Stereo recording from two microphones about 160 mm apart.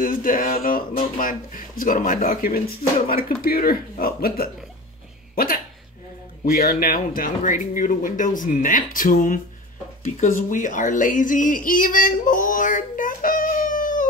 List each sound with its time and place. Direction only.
0.0 s a woman's voice: 60° left (ahead or behind)